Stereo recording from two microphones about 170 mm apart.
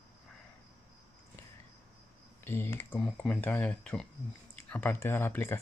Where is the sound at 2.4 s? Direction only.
15° left (ahead or behind).